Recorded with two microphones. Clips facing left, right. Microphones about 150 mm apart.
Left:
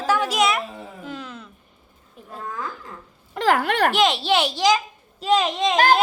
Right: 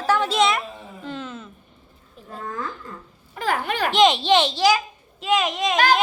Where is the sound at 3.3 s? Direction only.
85° left; by 3.9 s 65° left (ahead or behind).